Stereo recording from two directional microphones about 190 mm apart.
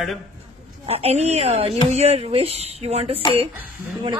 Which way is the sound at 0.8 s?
30° right (ahead or behind).